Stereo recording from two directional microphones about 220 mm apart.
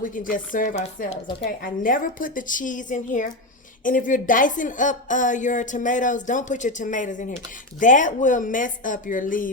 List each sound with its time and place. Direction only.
0.0 s speech: 40° left (ahead or behind)